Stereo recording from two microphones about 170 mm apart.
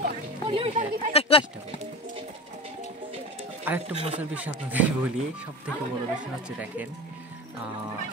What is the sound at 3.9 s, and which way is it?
Speech, 35° right (ahead or behind).